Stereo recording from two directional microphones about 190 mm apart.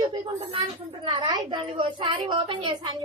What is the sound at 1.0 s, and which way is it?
A woman's voice, 25° right (ahead or behind).